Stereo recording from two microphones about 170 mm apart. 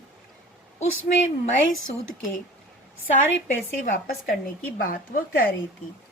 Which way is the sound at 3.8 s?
55° left (ahead or behind).